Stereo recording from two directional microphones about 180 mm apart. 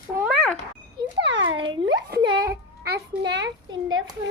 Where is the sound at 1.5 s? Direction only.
25° right (ahead or behind).